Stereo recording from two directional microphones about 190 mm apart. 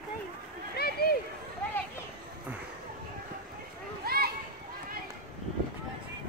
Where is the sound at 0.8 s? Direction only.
55° left (ahead or behind).